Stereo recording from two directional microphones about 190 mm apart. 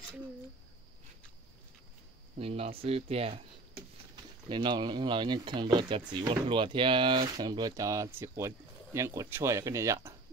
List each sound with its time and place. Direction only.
2.3 s speech: 30° right (ahead or behind)
4.5 s speech: 25° right (ahead or behind)